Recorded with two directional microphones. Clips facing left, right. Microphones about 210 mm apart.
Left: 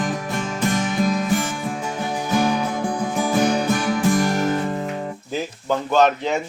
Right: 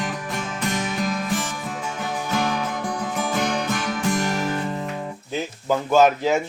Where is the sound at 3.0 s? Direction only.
10° left (ahead or behind).